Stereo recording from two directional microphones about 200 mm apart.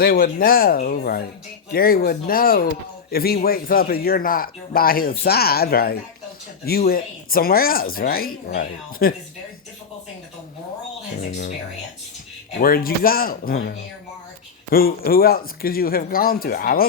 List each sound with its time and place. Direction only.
0.0 s speech: 45° left (ahead or behind)
12.6 s speech: 45° left (ahead or behind)